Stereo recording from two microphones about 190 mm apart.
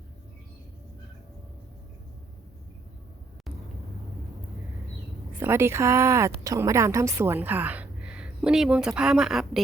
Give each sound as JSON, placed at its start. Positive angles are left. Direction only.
{"t": 5.4, "sound": "speech", "side_deg": -15}